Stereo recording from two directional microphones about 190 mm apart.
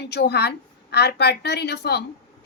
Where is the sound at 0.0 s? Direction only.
60° left (ahead or behind).